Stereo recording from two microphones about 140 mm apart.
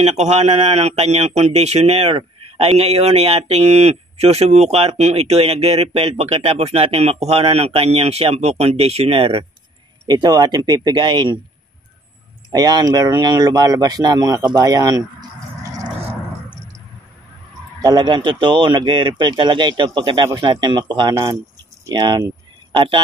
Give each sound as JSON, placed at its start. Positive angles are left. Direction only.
{"t": 0.0, "sound": "speech", "side_deg": -50}
{"t": 10.0, "sound": "speech", "side_deg": -30}
{"t": 12.4, "sound": "speech", "side_deg": -30}
{"t": 17.8, "sound": "speech", "side_deg": -30}